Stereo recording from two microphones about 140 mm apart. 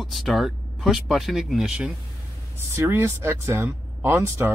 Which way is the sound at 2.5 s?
15° right (ahead or behind).